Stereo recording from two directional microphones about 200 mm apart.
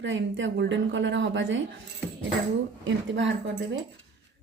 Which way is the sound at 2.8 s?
65° right (ahead or behind).